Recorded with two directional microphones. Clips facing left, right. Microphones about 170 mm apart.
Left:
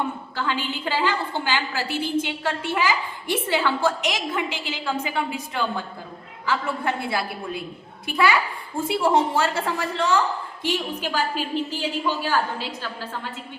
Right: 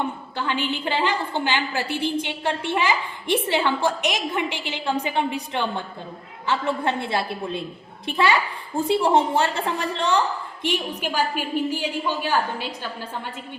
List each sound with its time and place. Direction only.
0.3 s a woman's voice: 20° right (ahead or behind)
9.0 s a woman's voice: 20° right (ahead or behind)